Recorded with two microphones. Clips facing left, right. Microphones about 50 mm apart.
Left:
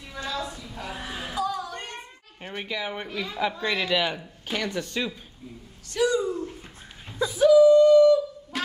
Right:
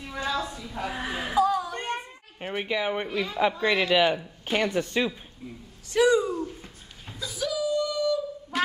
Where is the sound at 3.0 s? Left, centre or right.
Centre.